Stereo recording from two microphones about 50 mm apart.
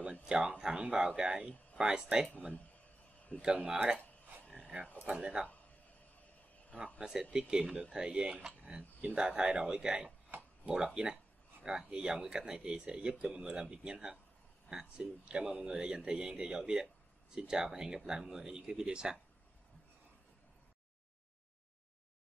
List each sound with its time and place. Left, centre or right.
0.0 s a sound: centre
0.6 s a man's voice: centre
3.4 s a man's voice: centre
4.6 s a sound: right
5.0 s speech: right
7.0 s a man's voice: centre